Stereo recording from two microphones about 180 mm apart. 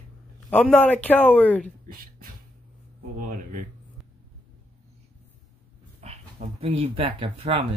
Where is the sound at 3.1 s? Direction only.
45° right (ahead or behind).